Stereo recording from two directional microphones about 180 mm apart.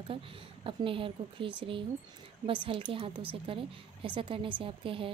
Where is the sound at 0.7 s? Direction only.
30° right (ahead or behind).